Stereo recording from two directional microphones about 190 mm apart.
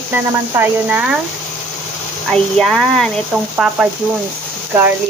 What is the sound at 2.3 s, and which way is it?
Speech, centre (ahead or behind).